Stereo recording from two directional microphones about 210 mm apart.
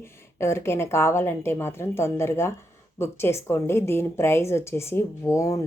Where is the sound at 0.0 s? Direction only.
10° left (ahead or behind).